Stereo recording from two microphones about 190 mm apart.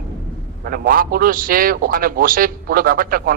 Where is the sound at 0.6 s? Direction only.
50° right (ahead or behind).